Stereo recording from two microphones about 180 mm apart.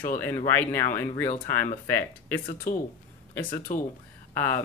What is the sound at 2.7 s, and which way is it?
Speech, 50° left (ahead or behind).